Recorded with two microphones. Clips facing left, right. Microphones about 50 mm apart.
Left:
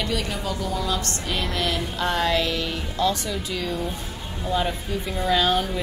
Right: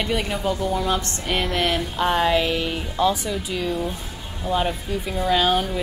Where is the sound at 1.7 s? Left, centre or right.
Centre.